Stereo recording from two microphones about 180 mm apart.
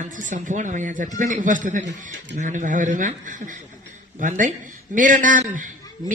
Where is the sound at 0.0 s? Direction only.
45° right (ahead or behind).